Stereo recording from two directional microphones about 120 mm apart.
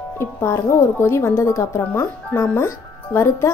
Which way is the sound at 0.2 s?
20° left (ahead or behind).